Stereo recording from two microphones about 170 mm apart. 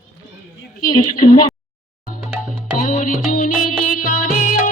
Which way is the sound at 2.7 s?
50° left (ahead or behind).